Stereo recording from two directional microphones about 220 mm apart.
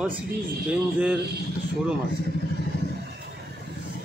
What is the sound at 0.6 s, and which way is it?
Speech, 5° right (ahead or behind).